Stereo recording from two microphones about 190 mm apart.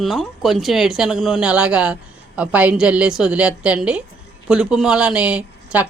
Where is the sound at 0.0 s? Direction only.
Centre (ahead or behind).